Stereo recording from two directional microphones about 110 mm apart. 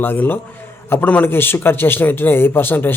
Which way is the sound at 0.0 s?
20° left (ahead or behind).